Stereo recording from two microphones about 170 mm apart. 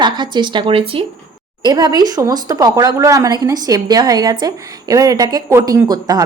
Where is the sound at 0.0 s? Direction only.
25° right (ahead or behind).